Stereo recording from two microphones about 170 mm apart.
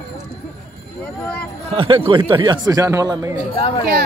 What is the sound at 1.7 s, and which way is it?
Speech, 30° right (ahead or behind).